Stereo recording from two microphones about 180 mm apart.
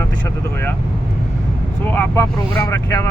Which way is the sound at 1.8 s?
15° left (ahead or behind).